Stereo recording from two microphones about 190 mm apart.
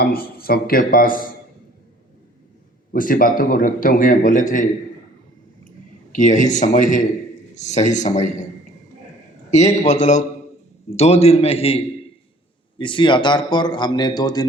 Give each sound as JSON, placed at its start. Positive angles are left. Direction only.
{"t": 0.0, "sound": "a man's voice", "side_deg": 50}
{"t": 2.9, "sound": "a man's voice", "side_deg": 45}
{"t": 6.1, "sound": "a man's voice", "side_deg": 40}
{"t": 9.5, "sound": "a man's voice", "side_deg": 35}
{"t": 12.8, "sound": "a man's voice", "side_deg": 25}